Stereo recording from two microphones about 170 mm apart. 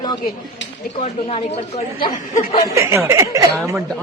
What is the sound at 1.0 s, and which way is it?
Speech, 35° left (ahead or behind).